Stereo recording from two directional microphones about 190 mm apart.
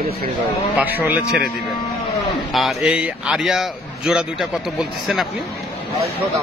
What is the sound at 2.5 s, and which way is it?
A man's voice, centre (ahead or behind).